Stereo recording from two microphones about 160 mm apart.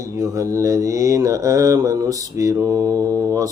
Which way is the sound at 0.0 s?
20° right (ahead or behind).